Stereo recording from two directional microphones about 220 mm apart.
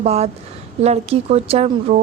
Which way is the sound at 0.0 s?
30° right (ahead or behind).